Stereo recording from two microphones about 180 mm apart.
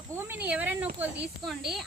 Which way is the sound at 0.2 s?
10° right (ahead or behind).